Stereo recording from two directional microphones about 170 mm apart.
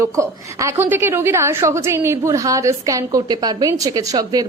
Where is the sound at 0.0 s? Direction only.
15° right (ahead or behind).